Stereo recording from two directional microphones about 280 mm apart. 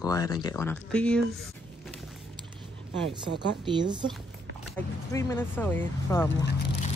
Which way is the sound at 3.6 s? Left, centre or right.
Centre.